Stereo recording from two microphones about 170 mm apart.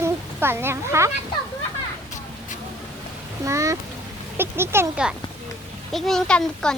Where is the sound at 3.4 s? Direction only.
20° right (ahead or behind).